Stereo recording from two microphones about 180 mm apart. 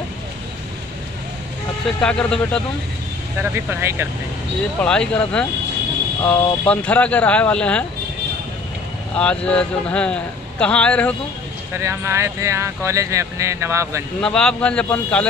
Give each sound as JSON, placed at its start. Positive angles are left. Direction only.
{"t": 2.0, "sound": "speech", "side_deg": 5}
{"t": 3.5, "sound": "speech", "side_deg": -15}
{"t": 4.7, "sound": "a man's voice", "side_deg": 5}
{"t": 9.1, "sound": "a man's voice", "side_deg": 5}
{"t": 11.7, "sound": "speech", "side_deg": -15}
{"t": 14.2, "sound": "a man's voice", "side_deg": 5}